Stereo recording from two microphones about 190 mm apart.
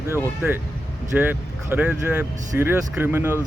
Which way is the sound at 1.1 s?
10° right (ahead or behind).